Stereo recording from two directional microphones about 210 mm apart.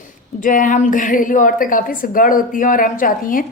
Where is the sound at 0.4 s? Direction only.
40° left (ahead or behind).